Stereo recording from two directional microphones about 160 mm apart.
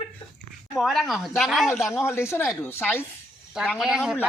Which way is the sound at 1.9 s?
15° left (ahead or behind).